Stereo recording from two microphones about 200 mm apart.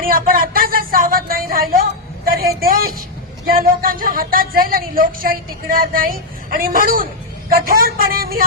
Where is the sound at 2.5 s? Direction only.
45° right (ahead or behind).